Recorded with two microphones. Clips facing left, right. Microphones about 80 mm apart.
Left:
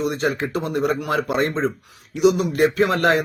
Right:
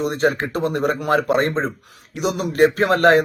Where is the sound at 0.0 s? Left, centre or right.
Right.